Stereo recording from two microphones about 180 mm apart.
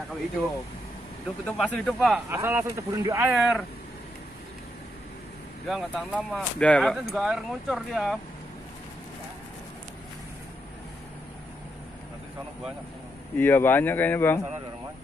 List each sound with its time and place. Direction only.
1.4 s speech: 5° left (ahead or behind)
2.2 s speech: 15° right (ahead or behind)
3.3 s speech: centre (ahead or behind)
5.7 s speech: 5° right (ahead or behind)
13.4 s speech: 10° left (ahead or behind)